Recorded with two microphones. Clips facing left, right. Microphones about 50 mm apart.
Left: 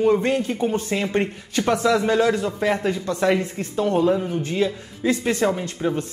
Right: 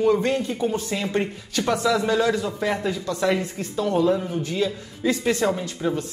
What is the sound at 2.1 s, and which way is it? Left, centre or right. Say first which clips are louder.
Speech: left 2 dB; left.